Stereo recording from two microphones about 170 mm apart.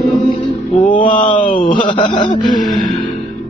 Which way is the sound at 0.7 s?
50° left (ahead or behind).